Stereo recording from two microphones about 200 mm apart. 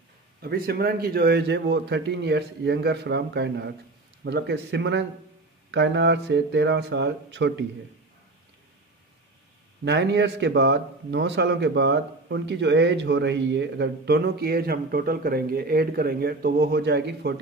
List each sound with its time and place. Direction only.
0.4 s speech: 50° right (ahead or behind)
9.8 s speech: 60° right (ahead or behind)